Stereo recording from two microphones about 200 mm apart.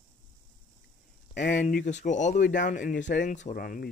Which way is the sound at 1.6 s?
45° left (ahead or behind).